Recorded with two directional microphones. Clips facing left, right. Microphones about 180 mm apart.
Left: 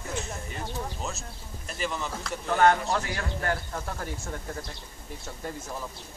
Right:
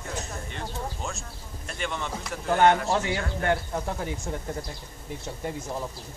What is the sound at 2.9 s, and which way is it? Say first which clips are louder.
Speech: right 3 dB; 20° right (ahead or behind).